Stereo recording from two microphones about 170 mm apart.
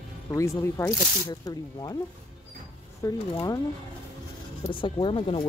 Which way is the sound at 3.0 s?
20° left (ahead or behind).